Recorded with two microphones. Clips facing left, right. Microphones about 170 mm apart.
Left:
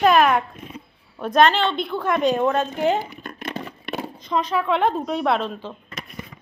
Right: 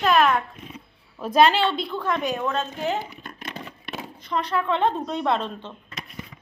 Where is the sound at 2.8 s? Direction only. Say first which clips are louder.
Left 6 dB; 60° left (ahead or behind).